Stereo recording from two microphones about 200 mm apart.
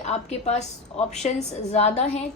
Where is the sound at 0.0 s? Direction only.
35° left (ahead or behind).